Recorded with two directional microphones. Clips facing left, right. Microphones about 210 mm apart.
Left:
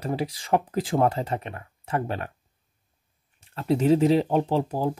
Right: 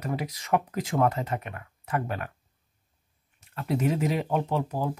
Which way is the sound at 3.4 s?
30° left (ahead or behind).